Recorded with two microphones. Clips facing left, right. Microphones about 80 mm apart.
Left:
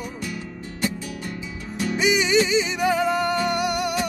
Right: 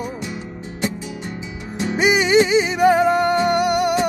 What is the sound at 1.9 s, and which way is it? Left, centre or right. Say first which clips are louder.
Music: right 5 dB; right.